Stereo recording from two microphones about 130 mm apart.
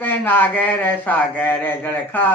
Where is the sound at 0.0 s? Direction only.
15° left (ahead or behind).